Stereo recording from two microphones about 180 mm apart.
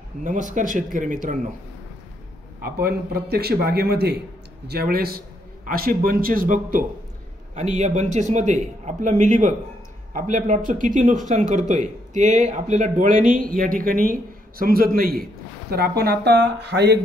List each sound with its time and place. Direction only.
0.2 s speech: 45° right (ahead or behind)
2.6 s a man's voice: 55° right (ahead or behind)